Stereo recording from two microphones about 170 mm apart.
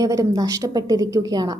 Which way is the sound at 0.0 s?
20° right (ahead or behind).